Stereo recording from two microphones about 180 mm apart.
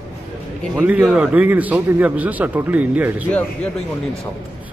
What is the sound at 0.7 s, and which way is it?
A man's voice, 10° right (ahead or behind).